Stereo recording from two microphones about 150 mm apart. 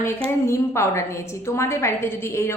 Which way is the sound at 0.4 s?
20° left (ahead or behind).